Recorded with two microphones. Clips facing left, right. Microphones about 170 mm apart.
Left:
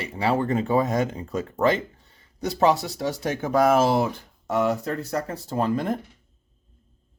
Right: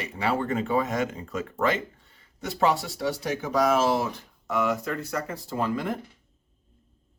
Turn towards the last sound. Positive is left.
turn(degrees=40)  # may be behind; listen again after turning